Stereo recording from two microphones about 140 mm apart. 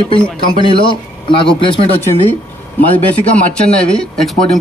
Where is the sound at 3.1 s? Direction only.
10° left (ahead or behind).